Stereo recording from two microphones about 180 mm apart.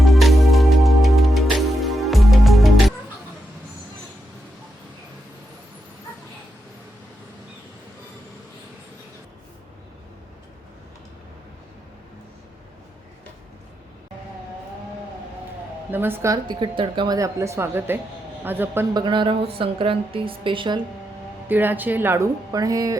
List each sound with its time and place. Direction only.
0.0 s music: centre (ahead or behind)
15.9 s speech: 10° right (ahead or behind)
18.9 s a woman's voice: 25° right (ahead or behind)
21.5 s speech: 10° right (ahead or behind)